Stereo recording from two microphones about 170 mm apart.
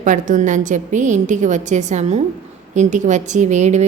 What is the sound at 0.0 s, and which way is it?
A woman's voice, 50° right (ahead or behind).